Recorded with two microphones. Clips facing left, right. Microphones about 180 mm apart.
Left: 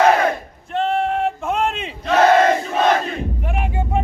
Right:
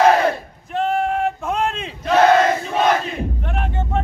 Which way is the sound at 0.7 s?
5° right (ahead or behind).